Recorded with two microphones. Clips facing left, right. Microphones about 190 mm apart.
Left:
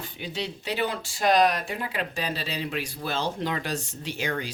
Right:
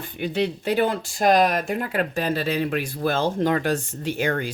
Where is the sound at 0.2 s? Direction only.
55° right (ahead or behind).